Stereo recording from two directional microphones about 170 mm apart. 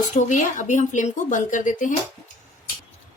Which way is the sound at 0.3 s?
45° left (ahead or behind).